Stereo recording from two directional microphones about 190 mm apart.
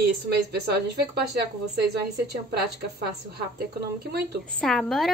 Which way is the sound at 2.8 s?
55° right (ahead or behind).